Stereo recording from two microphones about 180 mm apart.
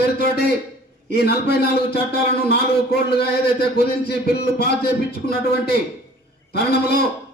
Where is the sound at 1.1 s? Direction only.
65° left (ahead or behind).